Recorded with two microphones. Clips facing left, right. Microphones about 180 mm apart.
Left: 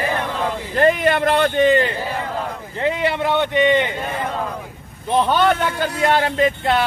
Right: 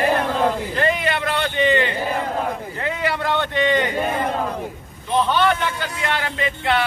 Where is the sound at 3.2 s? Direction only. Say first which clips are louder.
Left 5 dB; 15° left (ahead or behind).